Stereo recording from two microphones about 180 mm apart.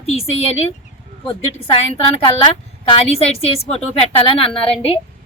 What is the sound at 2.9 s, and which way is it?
Speech, 35° left (ahead or behind).